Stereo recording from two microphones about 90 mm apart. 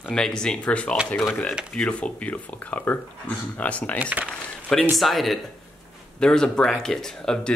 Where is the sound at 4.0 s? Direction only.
15° right (ahead or behind).